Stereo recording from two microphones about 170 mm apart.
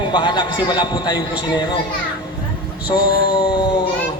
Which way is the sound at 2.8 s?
30° left (ahead or behind).